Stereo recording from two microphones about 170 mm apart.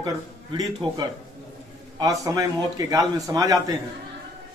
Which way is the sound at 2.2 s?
20° right (ahead or behind).